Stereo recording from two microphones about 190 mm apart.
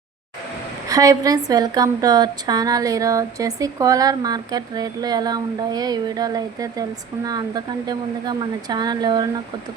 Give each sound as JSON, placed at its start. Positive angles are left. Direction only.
{"t": 0.9, "sound": "a woman's voice", "side_deg": -20}